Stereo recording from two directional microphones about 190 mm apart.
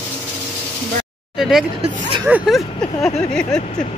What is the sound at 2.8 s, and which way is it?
Speech, 10° left (ahead or behind).